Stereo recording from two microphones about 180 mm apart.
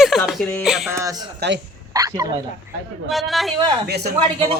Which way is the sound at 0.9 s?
15° right (ahead or behind).